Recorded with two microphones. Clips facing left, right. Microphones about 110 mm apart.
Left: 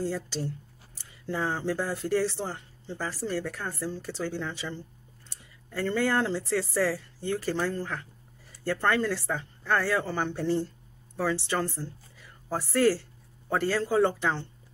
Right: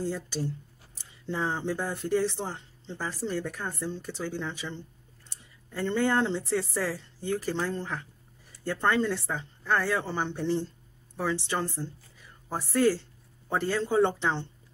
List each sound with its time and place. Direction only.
0.0 s speech: 15° right (ahead or behind)